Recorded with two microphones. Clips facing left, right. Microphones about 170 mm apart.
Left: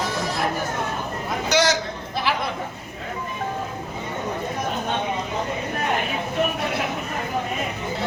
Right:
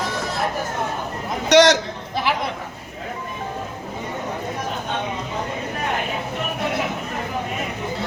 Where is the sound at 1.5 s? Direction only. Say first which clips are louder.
Right 7 dB; 75° right (ahead or behind).